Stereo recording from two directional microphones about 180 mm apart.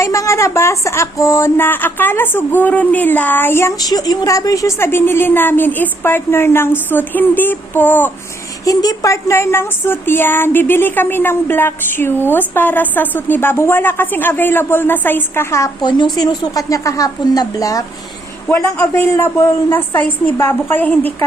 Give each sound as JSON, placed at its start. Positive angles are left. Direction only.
{"t": 0.0, "sound": "a woman's voice", "side_deg": 15}